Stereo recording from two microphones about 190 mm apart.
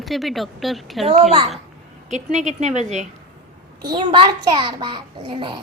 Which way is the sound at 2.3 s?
35° right (ahead or behind).